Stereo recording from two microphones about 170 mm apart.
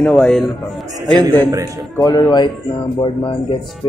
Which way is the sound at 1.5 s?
20° right (ahead or behind).